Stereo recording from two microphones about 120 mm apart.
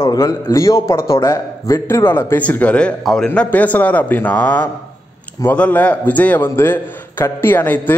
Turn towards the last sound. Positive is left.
turn(degrees=15)  # may be behind; listen again after turning